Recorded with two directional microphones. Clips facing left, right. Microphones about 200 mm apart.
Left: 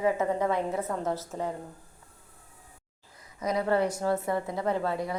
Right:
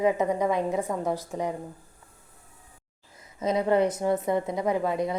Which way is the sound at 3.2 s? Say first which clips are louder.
Right 3 dB; 25° right (ahead or behind).